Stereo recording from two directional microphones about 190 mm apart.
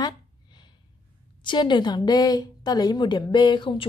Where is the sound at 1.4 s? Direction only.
25° left (ahead or behind).